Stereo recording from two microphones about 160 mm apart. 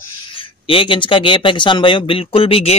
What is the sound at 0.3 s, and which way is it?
Speech, 35° left (ahead or behind).